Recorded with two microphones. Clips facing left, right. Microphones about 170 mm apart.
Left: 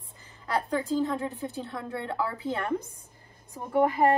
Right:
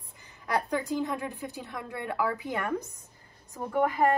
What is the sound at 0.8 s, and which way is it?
Speech, 15° right (ahead or behind).